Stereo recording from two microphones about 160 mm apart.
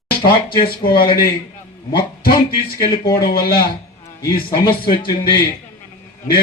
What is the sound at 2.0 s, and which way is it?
A man's voice, 70° left (ahead or behind).